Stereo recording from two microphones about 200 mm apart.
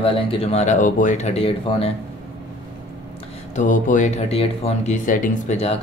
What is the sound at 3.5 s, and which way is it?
Speech, 40° left (ahead or behind).